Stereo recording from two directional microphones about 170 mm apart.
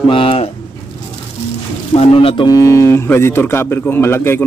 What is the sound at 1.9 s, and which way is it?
Speech, 35° left (ahead or behind).